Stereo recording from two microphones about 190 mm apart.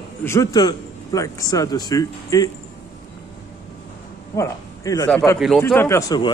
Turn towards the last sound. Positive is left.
turn(degrees=20)  # may be behind; listen again after turning